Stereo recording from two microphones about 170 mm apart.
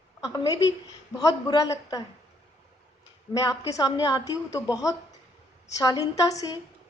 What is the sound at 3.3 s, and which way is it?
A woman's voice, 20° left (ahead or behind).